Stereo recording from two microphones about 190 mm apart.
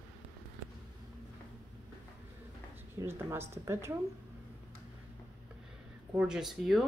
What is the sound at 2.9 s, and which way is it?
Speech, 15° right (ahead or behind).